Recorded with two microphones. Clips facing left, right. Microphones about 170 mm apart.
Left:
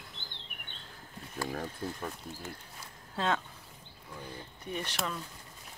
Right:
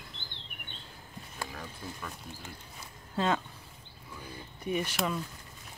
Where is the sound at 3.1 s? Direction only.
5° right (ahead or behind).